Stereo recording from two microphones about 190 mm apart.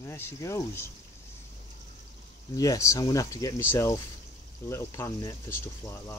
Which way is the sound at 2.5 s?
15° left (ahead or behind).